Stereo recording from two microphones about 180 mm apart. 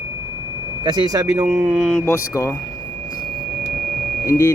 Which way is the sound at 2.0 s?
15° left (ahead or behind).